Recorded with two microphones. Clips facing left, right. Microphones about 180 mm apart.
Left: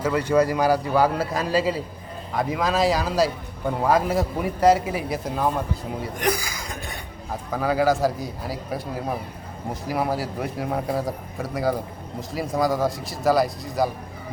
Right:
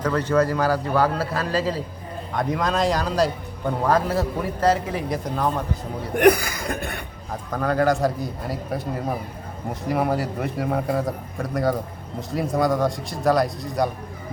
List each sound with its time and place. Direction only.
0.0 s a man's voice: 10° left (ahead or behind)
6.1 s chuckle: 60° right (ahead or behind)
7.5 s a man's voice: 5° left (ahead or behind)